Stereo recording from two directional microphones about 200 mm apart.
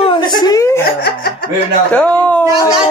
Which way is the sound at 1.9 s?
5° left (ahead or behind).